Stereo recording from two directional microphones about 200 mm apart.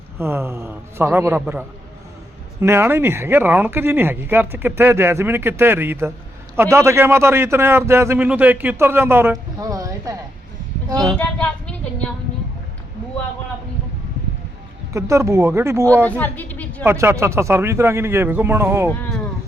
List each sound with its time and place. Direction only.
0.2 s a man's voice: 10° right (ahead or behind)
11.0 s speech: 5° left (ahead or behind)
14.9 s a man's voice: 15° right (ahead or behind)
16.0 s a woman's voice: 10° left (ahead or behind)
16.8 s a man's voice: 10° right (ahead or behind)
18.9 s speech: 10° left (ahead or behind)